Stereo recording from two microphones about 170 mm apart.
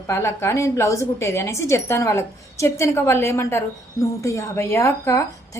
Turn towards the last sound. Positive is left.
turn(degrees=15)  # may be behind; listen again after turning